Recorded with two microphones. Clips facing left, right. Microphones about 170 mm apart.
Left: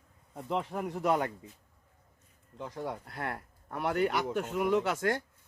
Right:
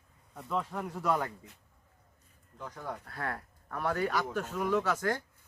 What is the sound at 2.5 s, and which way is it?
A man's voice, 25° left (ahead or behind).